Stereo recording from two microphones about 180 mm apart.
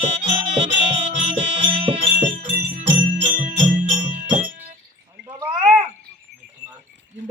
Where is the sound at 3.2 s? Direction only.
45° right (ahead or behind).